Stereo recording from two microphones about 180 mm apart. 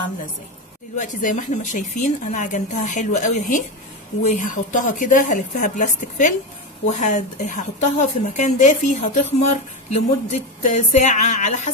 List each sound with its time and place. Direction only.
0.9 s a woman's voice: 45° left (ahead or behind)